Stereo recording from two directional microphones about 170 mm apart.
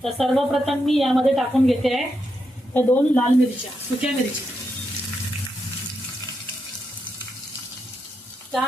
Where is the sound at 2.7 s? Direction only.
10° left (ahead or behind).